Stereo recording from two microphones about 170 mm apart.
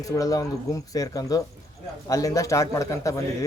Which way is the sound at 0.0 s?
20° left (ahead or behind).